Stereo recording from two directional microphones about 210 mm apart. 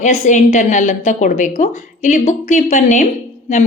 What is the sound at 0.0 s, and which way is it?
Speech, 35° left (ahead or behind).